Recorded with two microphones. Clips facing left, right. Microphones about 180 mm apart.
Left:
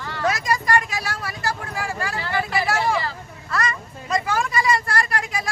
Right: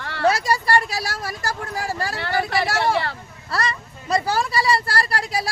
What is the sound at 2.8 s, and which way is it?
Speech, 65° right (ahead or behind).